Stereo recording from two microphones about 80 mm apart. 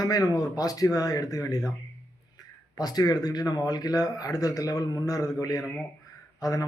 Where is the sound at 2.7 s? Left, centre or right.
Left.